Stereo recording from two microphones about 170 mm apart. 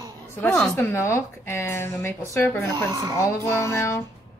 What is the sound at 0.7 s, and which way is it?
Speech, 15° left (ahead or behind).